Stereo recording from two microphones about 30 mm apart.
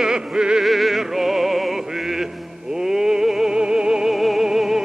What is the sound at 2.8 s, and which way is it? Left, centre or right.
Music, centre.